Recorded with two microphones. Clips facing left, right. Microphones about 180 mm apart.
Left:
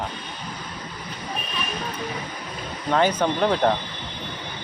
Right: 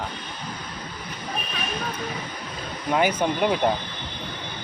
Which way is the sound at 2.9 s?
10° right (ahead or behind).